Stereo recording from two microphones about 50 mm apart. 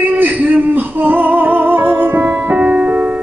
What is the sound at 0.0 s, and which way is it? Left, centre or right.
Music, right.